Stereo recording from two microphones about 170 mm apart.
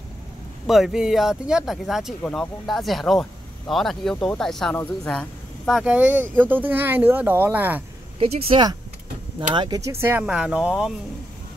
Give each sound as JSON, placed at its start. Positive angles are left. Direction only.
{"t": 0.7, "sound": "speech", "side_deg": 0}
{"t": 8.2, "sound": "speech", "side_deg": -35}
{"t": 9.5, "sound": "speech", "side_deg": -25}